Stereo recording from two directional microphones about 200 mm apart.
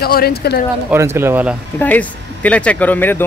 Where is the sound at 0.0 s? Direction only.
50° left (ahead or behind).